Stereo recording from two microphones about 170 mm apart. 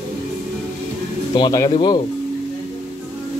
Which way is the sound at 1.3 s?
25° left (ahead or behind).